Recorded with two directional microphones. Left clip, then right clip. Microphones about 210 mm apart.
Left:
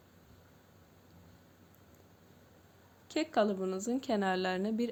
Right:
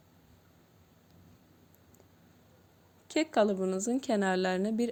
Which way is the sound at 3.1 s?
40° right (ahead or behind).